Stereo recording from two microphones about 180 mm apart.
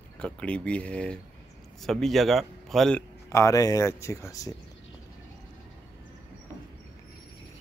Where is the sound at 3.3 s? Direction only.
15° left (ahead or behind).